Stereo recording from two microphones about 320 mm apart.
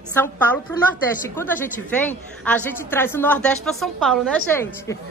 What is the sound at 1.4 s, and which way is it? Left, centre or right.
A woman's voice, centre.